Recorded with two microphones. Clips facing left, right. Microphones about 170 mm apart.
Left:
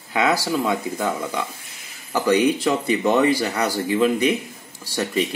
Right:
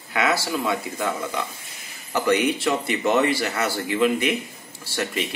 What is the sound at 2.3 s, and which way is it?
Speech, 35° left (ahead or behind).